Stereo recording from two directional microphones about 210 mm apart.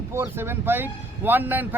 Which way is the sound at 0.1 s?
10° right (ahead or behind).